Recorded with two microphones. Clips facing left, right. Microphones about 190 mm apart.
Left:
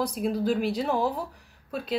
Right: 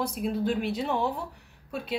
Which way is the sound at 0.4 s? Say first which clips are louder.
Left 2 dB; 5° left (ahead or behind).